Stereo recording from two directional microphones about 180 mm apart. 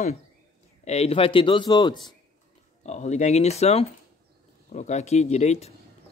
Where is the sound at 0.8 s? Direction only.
35° left (ahead or behind).